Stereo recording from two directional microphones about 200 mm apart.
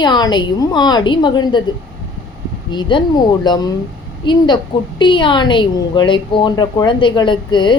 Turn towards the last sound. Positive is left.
turn(degrees=25)  # may be behind; listen again after turning